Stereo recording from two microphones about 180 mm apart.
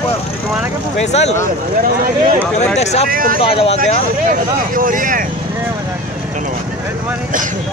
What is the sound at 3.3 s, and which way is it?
Speech, 30° left (ahead or behind).